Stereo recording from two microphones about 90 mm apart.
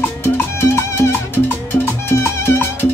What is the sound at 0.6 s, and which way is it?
Music, 30° left (ahead or behind).